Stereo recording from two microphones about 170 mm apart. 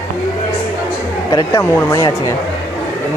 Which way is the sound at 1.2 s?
20° left (ahead or behind).